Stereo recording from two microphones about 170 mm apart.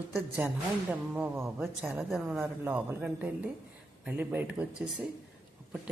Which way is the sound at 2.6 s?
10° right (ahead or behind).